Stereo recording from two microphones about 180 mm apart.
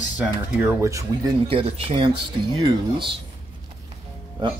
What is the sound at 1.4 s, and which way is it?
Speech, 30° right (ahead or behind).